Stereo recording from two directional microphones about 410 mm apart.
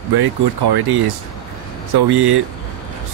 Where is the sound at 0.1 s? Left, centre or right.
Right.